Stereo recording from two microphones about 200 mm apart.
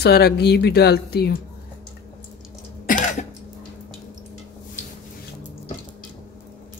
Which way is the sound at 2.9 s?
40° left (ahead or behind).